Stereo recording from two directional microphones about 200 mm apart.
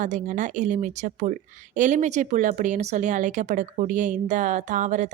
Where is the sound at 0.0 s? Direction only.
40° right (ahead or behind).